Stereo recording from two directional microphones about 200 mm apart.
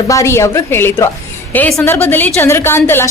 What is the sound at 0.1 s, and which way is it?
A woman's voice, 15° left (ahead or behind).